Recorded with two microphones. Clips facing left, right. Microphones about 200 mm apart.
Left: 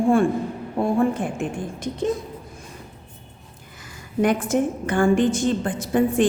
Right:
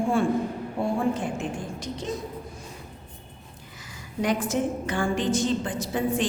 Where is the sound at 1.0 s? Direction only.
55° left (ahead or behind).